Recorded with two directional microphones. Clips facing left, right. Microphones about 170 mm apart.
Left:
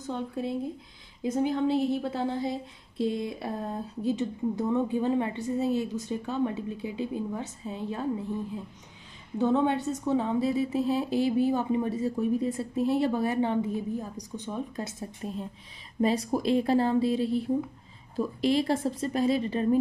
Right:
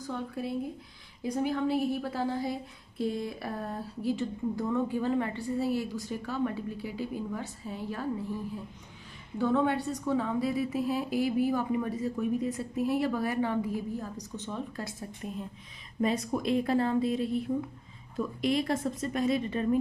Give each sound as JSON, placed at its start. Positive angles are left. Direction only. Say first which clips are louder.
{"t": 0.0, "sound": "a woman's voice", "louder": "left 3 dB", "side_deg": 20}
{"t": 9.4, "sound": "a woman's voice", "louder": "left 2 dB", "side_deg": 20}